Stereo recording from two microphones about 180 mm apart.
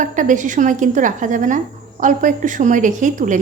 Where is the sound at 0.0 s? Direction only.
45° right (ahead or behind).